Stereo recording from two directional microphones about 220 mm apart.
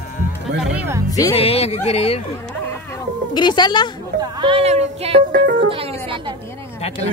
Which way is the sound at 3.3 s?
20° left (ahead or behind).